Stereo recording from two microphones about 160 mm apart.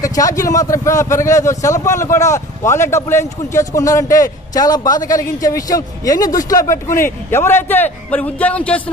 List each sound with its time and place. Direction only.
0.0 s a man's voice: 20° left (ahead or behind)